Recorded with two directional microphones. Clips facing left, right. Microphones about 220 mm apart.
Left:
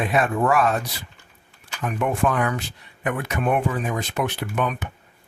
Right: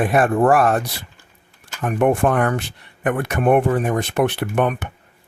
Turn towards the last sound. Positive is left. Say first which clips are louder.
# right 6 dB
turn(degrees=-55)  # may be behind; listen again after turning